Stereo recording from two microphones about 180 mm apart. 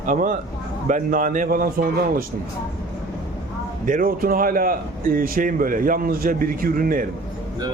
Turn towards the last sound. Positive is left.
turn(degrees=-50)  # may be behind; listen again after turning